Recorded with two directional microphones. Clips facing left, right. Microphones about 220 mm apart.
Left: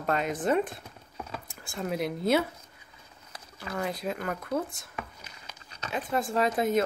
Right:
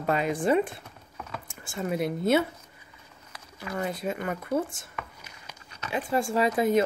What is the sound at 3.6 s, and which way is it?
Speech, 5° right (ahead or behind).